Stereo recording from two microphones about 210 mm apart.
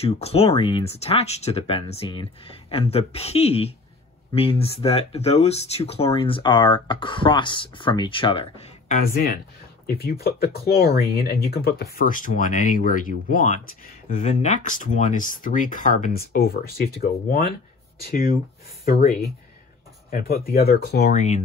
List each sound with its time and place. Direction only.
0.0 s speech: 30° left (ahead or behind)
9.0 s speech: 45° left (ahead or behind)
18.9 s speech: 40° left (ahead or behind)
21.1 s speech: 35° left (ahead or behind)